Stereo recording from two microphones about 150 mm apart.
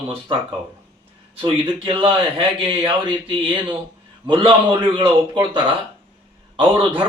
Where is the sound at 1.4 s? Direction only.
35° right (ahead or behind).